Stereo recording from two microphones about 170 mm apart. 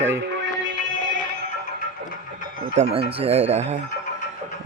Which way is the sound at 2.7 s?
40° right (ahead or behind).